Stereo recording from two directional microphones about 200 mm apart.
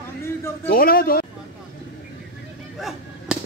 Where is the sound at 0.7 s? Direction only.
50° left (ahead or behind).